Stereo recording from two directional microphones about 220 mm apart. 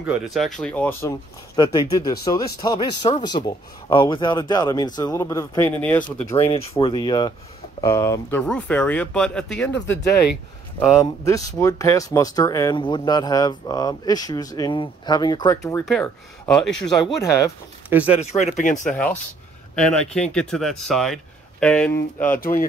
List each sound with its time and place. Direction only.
0.0 s speech: 5° right (ahead or behind)
6.8 s speech: 20° left (ahead or behind); by 9.7 s 5° left (ahead or behind)
11.0 s speech: 15° left (ahead or behind)
15.8 s speech: centre (ahead or behind)
17.0 s speech: 15° left (ahead or behind)
17.8 s speech: 5° right (ahead or behind)
18.2 s speech: 30° left (ahead or behind)
18.9 s speech: 5° left (ahead or behind)
22.3 s speech: 40° left (ahead or behind)